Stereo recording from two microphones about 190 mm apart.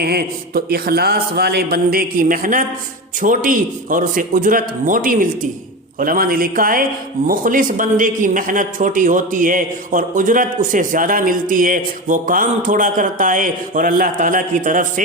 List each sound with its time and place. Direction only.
0.0 s a man's voice: 55° right (ahead or behind)